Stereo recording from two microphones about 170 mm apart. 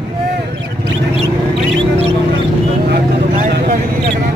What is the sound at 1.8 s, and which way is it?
Mouse, 35° right (ahead or behind).